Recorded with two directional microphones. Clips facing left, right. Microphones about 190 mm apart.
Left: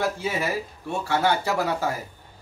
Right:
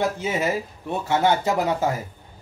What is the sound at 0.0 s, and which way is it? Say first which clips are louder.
Speech: right 3 dB; 20° right (ahead or behind).